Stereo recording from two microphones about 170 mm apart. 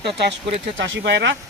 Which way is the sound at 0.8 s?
90° right.